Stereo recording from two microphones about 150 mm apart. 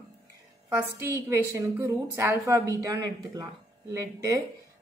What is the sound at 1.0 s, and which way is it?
A woman's voice, 15° right (ahead or behind).